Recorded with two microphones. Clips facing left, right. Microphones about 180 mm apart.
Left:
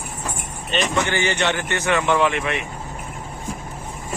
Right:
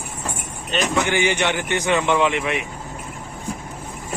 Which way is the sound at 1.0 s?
15° right (ahead or behind).